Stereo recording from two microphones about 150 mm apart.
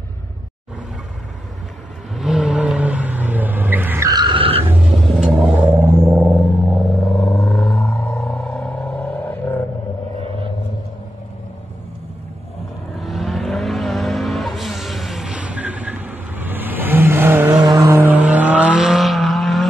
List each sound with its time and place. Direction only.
2.1 s vehicle: centre (ahead or behind)
4.1 s vehicle: 30° right (ahead or behind)
4.9 s vehicle: centre (ahead or behind)
5.4 s a sound: 10° right (ahead or behind)
7.2 s a sound: centre (ahead or behind)
12.9 s vehicle: centre (ahead or behind)